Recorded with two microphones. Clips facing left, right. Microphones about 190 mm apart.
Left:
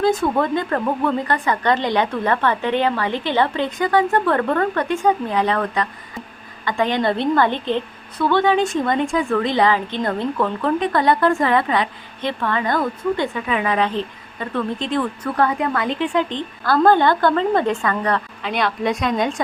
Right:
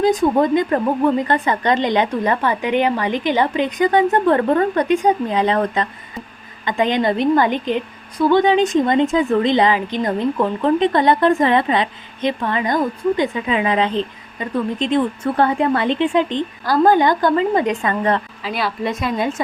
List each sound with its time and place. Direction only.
0.0 s a woman's voice: 15° right (ahead or behind)
18.4 s a woman's voice: 5° right (ahead or behind)